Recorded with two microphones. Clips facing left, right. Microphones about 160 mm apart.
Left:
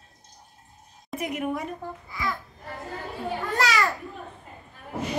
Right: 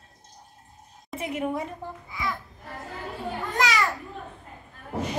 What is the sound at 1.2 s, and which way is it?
Speech, 25° right (ahead or behind).